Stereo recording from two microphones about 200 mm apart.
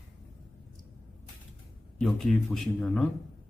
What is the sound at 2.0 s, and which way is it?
Speech, centre (ahead or behind).